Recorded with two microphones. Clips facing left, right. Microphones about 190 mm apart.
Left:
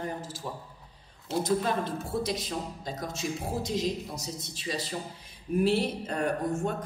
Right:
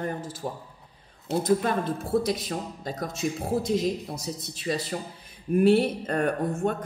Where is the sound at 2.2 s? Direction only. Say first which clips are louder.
Right 3 dB; 55° right (ahead or behind).